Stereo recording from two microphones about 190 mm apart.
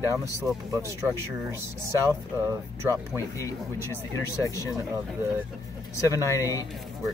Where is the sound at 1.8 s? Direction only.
15° right (ahead or behind).